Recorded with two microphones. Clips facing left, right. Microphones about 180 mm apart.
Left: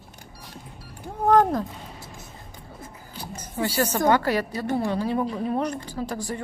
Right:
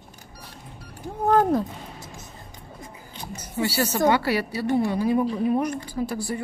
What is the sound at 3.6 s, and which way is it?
Speech, 50° left (ahead or behind).